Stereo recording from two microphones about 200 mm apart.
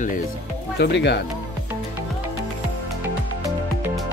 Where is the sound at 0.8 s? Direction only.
60° left (ahead or behind).